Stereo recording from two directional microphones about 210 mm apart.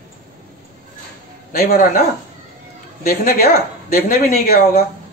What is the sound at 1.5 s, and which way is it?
Speech, 45° left (ahead or behind).